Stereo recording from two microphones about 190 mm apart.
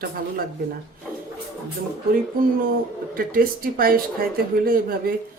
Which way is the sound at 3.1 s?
50° right (ahead or behind).